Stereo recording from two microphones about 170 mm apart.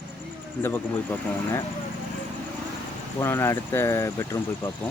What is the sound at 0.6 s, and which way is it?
Speech, 10° left (ahead or behind).